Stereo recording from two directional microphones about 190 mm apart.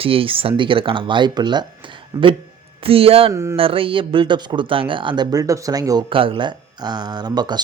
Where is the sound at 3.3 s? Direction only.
15° right (ahead or behind).